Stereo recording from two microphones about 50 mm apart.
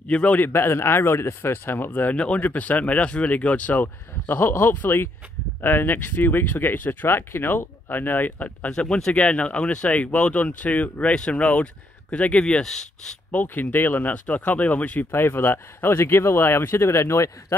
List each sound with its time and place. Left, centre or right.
0.1 s speech: left
0.4 s speech: left
2.1 s speech: left
3.8 s speech: left
8.6 s speech: centre
12.6 s speech: centre
13.3 s speech: left
14.1 s speech: left
15.0 s speech: left